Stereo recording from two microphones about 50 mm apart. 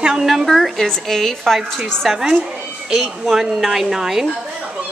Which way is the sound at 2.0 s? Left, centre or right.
Centre.